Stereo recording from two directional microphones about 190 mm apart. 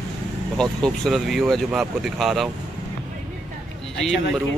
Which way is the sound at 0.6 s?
Centre (ahead or behind).